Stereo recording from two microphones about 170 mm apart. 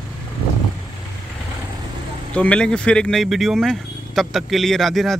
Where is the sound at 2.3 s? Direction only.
5° left (ahead or behind).